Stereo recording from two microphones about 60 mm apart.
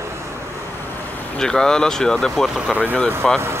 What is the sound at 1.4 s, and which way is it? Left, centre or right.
Speech, centre.